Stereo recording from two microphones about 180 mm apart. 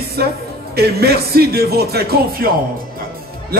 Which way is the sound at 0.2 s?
60° right (ahead or behind).